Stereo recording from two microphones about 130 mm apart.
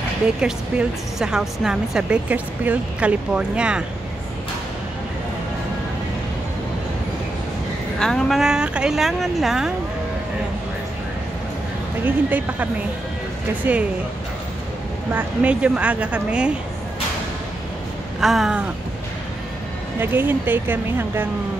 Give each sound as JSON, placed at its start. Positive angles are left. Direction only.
{"t": 0.4, "sound": "speech", "side_deg": -5}
{"t": 8.0, "sound": "speech", "side_deg": 5}
{"t": 12.0, "sound": "speech", "side_deg": -15}
{"t": 13.7, "sound": "speech", "side_deg": -15}
{"t": 15.1, "sound": "speech", "side_deg": -10}
{"t": 18.2, "sound": "speech", "side_deg": 0}
{"t": 20.0, "sound": "speech", "side_deg": -15}